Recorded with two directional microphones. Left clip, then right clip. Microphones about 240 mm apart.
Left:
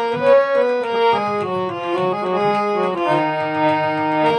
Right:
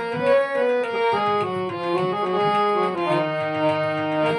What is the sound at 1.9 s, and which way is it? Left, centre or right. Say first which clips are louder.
Accordion: left 2 dB; left.